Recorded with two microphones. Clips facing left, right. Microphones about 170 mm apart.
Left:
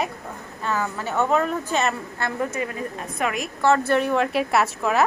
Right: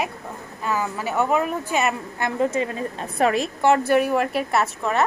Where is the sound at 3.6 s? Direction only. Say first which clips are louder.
Right 1 dB; 15° right (ahead or behind); by 5.0 s centre (ahead or behind).